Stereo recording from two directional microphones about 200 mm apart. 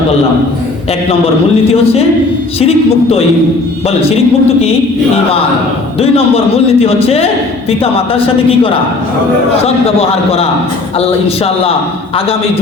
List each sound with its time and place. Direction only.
2.6 s a man's voice: 30° left (ahead or behind)
6.0 s a man's voice: 30° left (ahead or behind)